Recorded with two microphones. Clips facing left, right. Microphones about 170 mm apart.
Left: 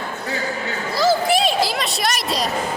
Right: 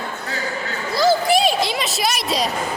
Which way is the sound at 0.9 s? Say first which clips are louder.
Right 1 dB; centre (ahead or behind).